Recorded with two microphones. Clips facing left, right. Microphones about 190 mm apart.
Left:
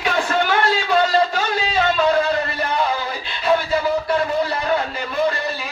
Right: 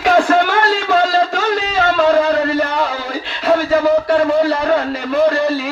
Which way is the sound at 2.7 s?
85° right.